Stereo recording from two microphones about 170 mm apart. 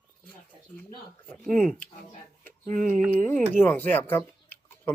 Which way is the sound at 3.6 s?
10° left (ahead or behind).